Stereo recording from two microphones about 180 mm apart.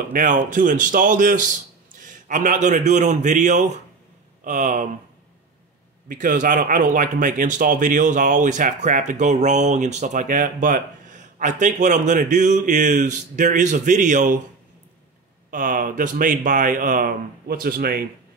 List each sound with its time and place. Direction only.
0.1 s speech: 45° right (ahead or behind)
6.0 s speech: 45° right (ahead or behind)
15.5 s speech: 50° right (ahead or behind)